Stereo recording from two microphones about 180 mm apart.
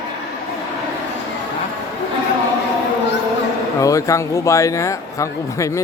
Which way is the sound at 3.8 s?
15° left (ahead or behind).